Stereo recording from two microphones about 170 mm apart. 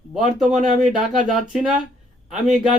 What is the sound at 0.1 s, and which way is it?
Speech, centre (ahead or behind).